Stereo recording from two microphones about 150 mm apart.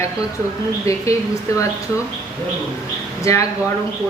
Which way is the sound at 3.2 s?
20° left (ahead or behind).